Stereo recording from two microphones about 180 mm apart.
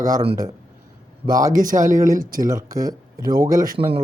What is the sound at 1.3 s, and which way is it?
Speech, 20° right (ahead or behind).